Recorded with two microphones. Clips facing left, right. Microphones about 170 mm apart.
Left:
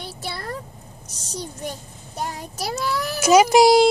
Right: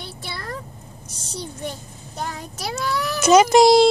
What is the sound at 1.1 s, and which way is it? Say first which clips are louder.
Speech: right 2 dB; 40° left (ahead or behind).